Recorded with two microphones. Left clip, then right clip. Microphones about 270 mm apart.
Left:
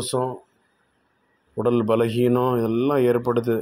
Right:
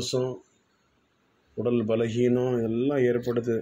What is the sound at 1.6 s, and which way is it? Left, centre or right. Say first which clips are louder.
Speech: left 5 dB; centre.